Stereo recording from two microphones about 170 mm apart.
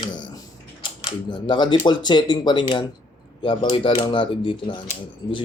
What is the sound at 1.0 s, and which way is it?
Speech, 25° left (ahead or behind).